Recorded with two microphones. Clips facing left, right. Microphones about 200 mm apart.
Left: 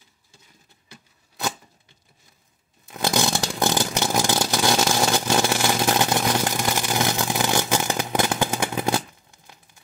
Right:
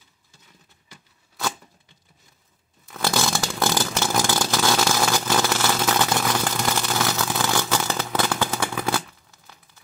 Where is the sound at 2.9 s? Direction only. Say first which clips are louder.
Left 1 dB; 20° left (ahead or behind).